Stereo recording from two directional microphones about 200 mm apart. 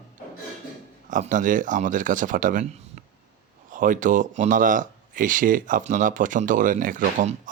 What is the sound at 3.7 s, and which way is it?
Speech, 40° right (ahead or behind).